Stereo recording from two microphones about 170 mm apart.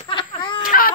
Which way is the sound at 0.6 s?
55° left (ahead or behind).